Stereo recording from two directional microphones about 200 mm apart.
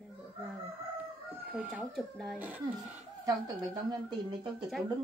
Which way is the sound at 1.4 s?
10° right (ahead or behind).